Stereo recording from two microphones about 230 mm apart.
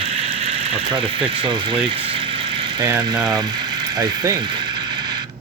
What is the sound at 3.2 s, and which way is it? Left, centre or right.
Vehicle, centre.